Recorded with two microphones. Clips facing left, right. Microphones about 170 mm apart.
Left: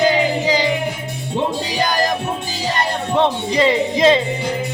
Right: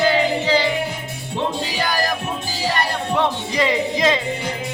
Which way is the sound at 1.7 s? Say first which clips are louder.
Left 4 dB; 20° left (ahead or behind).